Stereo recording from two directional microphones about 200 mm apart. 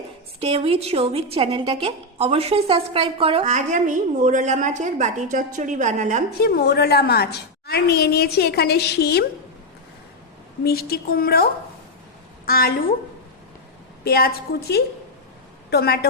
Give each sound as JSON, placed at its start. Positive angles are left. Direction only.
{"t": 0.3, "sound": "a woman's voice", "side_deg": -30}
{"t": 6.4, "sound": "a woman's voice", "side_deg": 50}
{"t": 10.6, "sound": "a woman's voice", "side_deg": 50}
{"t": 12.5, "sound": "a woman's voice", "side_deg": 50}
{"t": 14.0, "sound": "a woman's voice", "side_deg": 50}